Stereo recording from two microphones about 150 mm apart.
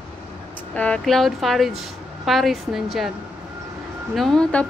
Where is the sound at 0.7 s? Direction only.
10° left (ahead or behind).